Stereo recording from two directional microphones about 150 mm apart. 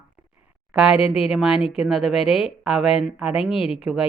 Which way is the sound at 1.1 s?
5° right (ahead or behind).